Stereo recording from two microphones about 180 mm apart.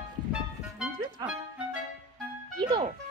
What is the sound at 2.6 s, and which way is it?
Music, 25° right (ahead or behind).